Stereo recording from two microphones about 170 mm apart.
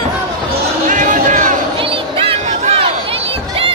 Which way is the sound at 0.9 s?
50° right (ahead or behind).